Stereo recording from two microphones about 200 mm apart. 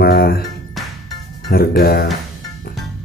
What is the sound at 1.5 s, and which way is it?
Speech, 50° left (ahead or behind).